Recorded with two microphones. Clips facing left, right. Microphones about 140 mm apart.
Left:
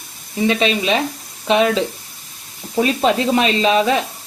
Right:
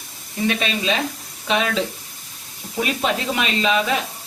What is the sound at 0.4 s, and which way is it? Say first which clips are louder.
Speech: left 5 dB; 25° left (ahead or behind).